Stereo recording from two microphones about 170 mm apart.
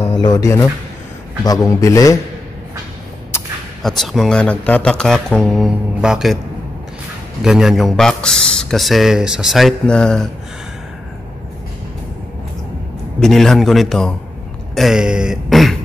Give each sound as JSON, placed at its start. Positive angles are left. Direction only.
{"t": 0.0, "sound": "a man's voice", "side_deg": 25}
{"t": 3.8, "sound": "a man's voice", "side_deg": 0}
{"t": 7.4, "sound": "a man's voice", "side_deg": -5}
{"t": 13.2, "sound": "a man's voice", "side_deg": 0}